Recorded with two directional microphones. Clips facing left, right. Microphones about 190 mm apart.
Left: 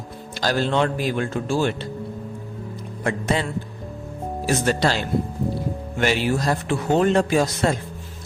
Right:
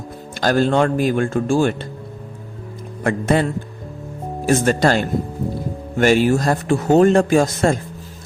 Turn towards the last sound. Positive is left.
turn(degrees=-45)  # may be behind; listen again after turning